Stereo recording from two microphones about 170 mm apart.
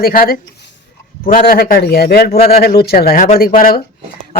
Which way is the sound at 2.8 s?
65° left (ahead or behind).